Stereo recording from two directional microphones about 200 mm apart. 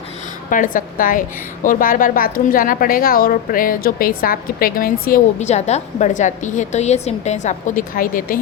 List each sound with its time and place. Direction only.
0.5 s a woman's voice: 40° left (ahead or behind)